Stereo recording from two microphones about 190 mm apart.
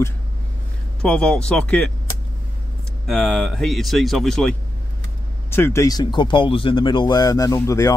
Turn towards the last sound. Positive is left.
turn(degrees=15)  # may be behind; listen again after turning